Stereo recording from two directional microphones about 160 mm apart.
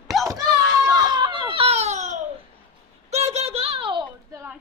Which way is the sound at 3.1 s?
40° right (ahead or behind).